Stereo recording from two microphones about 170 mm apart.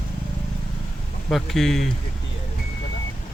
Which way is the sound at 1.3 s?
Centre (ahead or behind).